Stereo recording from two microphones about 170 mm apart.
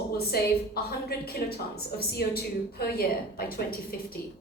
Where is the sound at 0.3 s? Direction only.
65° left (ahead or behind).